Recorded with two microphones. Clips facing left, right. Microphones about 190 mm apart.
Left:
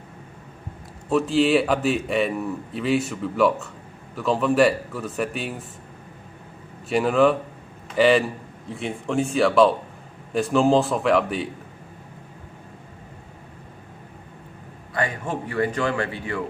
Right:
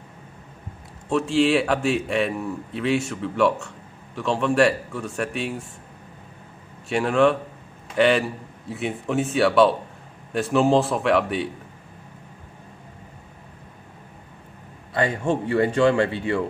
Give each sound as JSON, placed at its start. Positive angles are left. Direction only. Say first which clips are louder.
{"t": 1.0, "sound": "a man's voice", "louder": "even", "side_deg": 0}
{"t": 6.9, "sound": "a man's voice", "louder": "left 1 dB", "side_deg": 0}
{"t": 15.0, "sound": "speech", "louder": "right 4 dB", "side_deg": -25}